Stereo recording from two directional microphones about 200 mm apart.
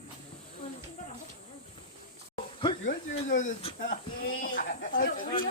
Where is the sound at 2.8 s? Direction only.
40° left (ahead or behind).